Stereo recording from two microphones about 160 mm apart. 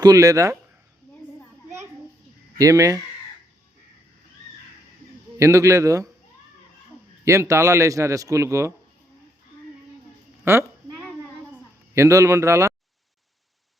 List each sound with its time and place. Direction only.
0.0 s speech: 20° right (ahead or behind)
2.6 s speech: 20° right (ahead or behind)
5.4 s speech: 20° right (ahead or behind)
7.3 s speech: 20° right (ahead or behind)
10.4 s speech: 15° right (ahead or behind)
11.9 s speech: 20° right (ahead or behind)